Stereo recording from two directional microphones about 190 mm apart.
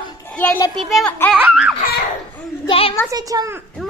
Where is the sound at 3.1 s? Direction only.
20° right (ahead or behind).